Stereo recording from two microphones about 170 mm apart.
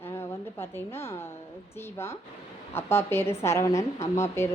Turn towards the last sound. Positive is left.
turn(degrees=15)  # may be behind; listen again after turning